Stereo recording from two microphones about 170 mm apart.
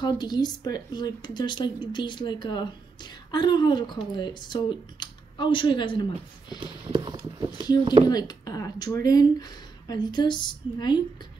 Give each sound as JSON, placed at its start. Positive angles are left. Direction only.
{"t": 0.0, "sound": "a woman's voice", "side_deg": 25}
{"t": 6.6, "sound": "a sound", "side_deg": -25}
{"t": 7.3, "sound": "speech", "side_deg": -25}
{"t": 8.1, "sound": "a woman's voice", "side_deg": 25}